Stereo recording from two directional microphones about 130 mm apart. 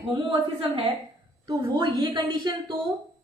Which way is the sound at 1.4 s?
35° right (ahead or behind).